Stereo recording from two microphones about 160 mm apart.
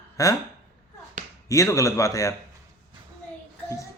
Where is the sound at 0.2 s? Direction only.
20° left (ahead or behind).